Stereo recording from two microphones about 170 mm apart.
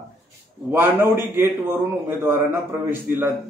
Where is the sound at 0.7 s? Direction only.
15° right (ahead or behind).